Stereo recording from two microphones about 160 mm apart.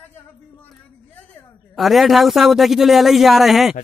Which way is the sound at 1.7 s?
Centre (ahead or behind).